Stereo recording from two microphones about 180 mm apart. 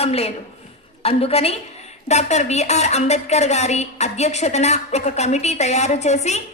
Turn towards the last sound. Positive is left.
turn(degrees=40)  # may be behind; listen again after turning